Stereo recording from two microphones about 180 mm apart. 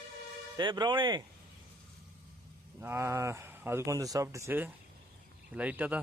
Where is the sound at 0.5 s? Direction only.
25° right (ahead or behind).